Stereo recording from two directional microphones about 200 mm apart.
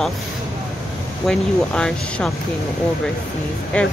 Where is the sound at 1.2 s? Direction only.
5° left (ahead or behind).